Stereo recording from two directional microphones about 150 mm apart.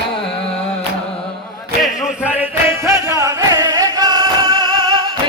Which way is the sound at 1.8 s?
5° right (ahead or behind).